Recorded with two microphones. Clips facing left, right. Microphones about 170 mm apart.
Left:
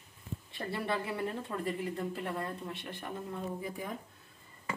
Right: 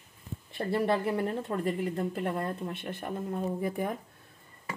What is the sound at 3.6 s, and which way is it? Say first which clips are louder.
Speech: right 8 dB; 55° right (ahead or behind).